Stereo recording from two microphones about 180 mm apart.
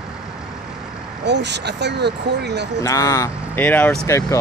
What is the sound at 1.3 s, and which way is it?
Speech, 70° right (ahead or behind).